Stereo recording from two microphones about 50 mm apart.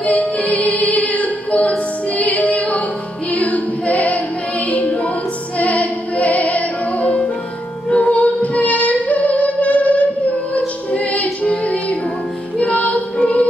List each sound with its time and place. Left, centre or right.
0.0 s music: left
3.3 s a capella: left
4.6 s music: left